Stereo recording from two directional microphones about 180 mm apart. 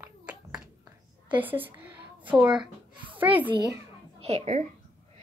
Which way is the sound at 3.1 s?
10° right (ahead or behind).